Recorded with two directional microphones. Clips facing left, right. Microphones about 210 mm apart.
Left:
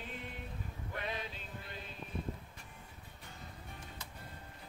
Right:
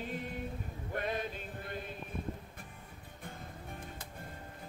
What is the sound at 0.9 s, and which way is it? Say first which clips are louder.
Male singing: right 6 dB; 50° right (ahead or behind).